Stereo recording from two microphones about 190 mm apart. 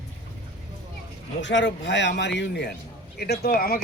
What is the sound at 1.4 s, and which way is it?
A man's voice, 75° left (ahead or behind).